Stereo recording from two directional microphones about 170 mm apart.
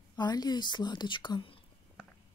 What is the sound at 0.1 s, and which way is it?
A woman's voice, 25° left (ahead or behind).